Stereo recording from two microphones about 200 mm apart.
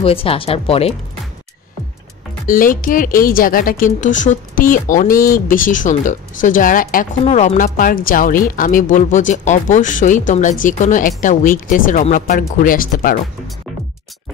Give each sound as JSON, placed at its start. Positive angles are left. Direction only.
{"t": 0.0, "sound": "speech", "side_deg": 30}
{"t": 2.4, "sound": "speech", "side_deg": 45}